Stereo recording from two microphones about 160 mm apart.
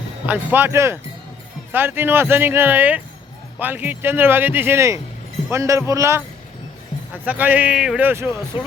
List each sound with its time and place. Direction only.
0.3 s speech: 10° right (ahead or behind)
7.3 s speech: 10° right (ahead or behind)